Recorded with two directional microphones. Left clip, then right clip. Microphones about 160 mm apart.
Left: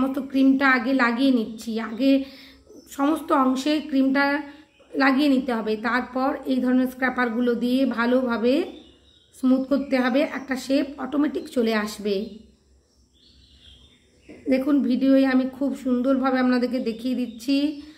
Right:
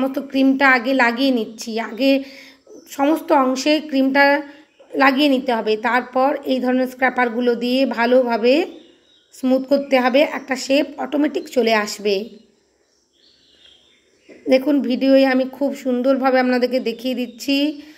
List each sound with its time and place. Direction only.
0.0 s a woman's voice: 20° right (ahead or behind)
14.5 s a woman's voice: 25° right (ahead or behind)